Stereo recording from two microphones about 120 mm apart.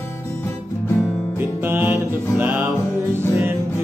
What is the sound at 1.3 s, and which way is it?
Music, 15° right (ahead or behind).